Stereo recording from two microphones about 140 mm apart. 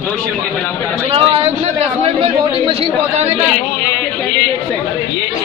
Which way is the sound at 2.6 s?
45° right (ahead or behind).